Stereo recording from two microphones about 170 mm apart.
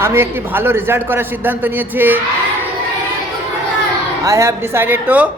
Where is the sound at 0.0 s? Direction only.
15° right (ahead or behind).